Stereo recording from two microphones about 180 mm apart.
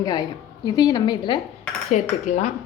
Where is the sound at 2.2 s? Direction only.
40° left (ahead or behind).